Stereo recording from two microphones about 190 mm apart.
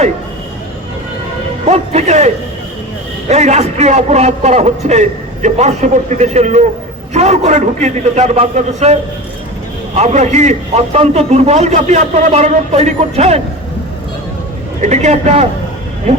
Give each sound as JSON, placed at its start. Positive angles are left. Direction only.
{"t": 1.6, "sound": "a man's voice", "side_deg": -35}
{"t": 14.8, "sound": "a man's voice", "side_deg": -35}